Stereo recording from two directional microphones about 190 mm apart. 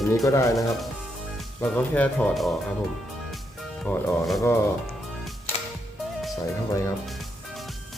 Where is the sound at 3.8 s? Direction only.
Centre (ahead or behind).